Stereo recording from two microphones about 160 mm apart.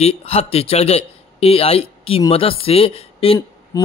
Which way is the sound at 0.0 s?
40° left (ahead or behind).